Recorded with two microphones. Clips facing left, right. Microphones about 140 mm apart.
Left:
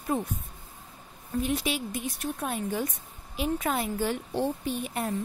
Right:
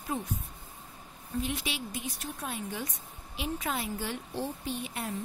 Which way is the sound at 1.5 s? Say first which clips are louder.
Left 6 dB; 40° left (ahead or behind).